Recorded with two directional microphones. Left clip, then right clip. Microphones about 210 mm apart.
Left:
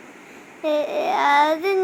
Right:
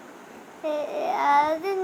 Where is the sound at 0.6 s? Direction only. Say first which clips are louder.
Left 6 dB; 20° left (ahead or behind).